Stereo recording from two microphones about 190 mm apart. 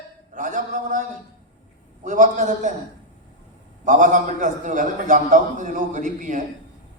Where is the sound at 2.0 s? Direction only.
40° right (ahead or behind).